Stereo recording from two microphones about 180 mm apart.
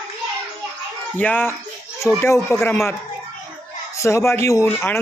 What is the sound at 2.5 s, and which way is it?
Speech, 15° left (ahead or behind).